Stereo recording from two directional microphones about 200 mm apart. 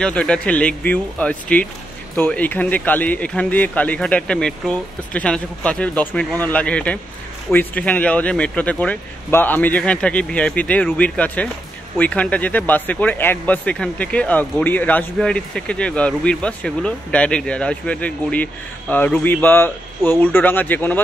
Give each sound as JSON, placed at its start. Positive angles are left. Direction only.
{"t": 0.0, "sound": "speech", "side_deg": 5}